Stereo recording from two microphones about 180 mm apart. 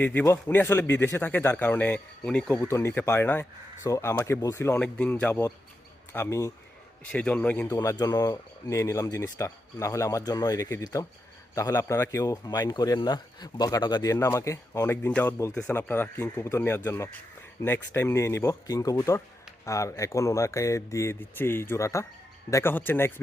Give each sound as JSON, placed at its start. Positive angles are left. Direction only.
{"t": 0.0, "sound": "speech", "side_deg": 10}